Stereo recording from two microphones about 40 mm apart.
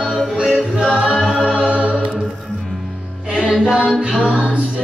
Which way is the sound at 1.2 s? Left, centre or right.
Centre.